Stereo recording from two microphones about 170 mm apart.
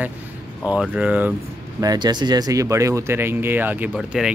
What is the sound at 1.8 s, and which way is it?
Speech, 25° right (ahead or behind).